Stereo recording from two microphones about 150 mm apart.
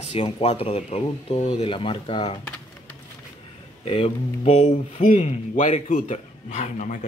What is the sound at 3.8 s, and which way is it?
Speech, 40° left (ahead or behind).